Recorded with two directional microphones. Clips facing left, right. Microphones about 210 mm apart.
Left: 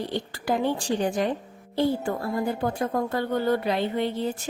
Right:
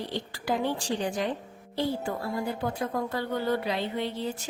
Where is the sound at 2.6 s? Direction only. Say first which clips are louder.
Left 4 dB; 50° left (ahead or behind).